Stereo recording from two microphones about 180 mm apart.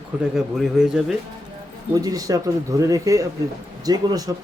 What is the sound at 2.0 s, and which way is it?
Speech, 20° right (ahead or behind).